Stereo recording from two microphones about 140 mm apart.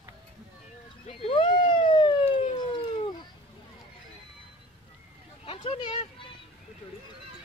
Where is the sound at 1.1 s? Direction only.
40° left (ahead or behind).